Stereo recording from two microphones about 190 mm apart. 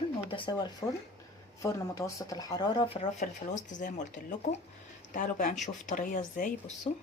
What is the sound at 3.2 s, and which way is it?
Speech, 40° left (ahead or behind).